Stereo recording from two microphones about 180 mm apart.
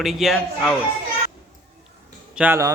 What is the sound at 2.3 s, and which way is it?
Speech, 10° right (ahead or behind).